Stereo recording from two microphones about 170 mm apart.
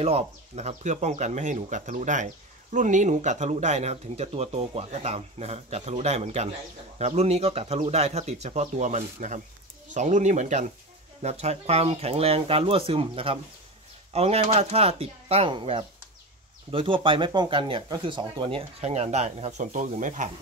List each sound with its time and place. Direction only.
0.0 s speech: 40° right (ahead or behind)